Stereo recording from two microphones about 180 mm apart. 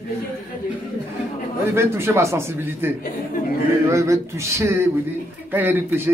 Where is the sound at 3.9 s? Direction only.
15° right (ahead or behind).